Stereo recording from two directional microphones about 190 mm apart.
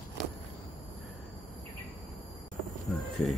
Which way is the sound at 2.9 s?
5° left (ahead or behind).